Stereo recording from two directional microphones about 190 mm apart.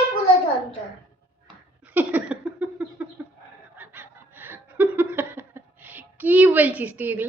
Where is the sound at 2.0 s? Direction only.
10° right (ahead or behind).